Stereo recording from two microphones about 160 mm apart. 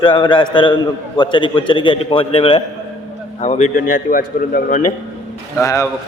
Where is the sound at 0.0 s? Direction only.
30° left (ahead or behind).